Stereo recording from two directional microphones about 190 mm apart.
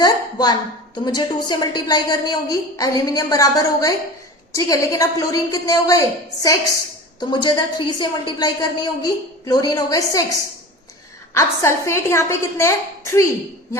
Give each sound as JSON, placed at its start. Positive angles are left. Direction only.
{"t": 0.0, "sound": "a sound", "side_deg": 20}
{"t": 1.0, "sound": "a woman's voice", "side_deg": 20}
{"t": 11.3, "sound": "a woman's voice", "side_deg": 15}